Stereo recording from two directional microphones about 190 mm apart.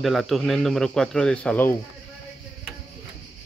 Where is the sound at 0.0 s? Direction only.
Centre (ahead or behind).